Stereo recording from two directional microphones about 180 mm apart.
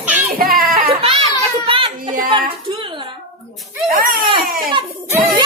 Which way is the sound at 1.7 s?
30° right (ahead or behind).